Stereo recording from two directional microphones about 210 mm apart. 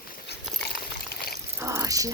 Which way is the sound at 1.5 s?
15° right (ahead or behind).